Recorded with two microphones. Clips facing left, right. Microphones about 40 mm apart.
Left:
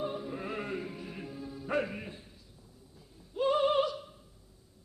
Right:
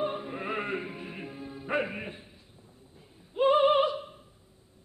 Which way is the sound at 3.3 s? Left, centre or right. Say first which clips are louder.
Right 5 dB; right.